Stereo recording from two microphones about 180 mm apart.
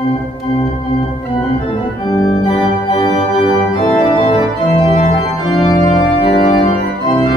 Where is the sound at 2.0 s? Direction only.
25° left (ahead or behind).